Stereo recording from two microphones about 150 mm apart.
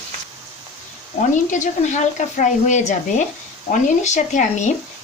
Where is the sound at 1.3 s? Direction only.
55° left (ahead or behind).